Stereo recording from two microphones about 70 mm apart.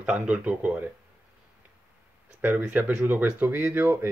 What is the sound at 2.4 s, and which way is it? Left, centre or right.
Speech, right.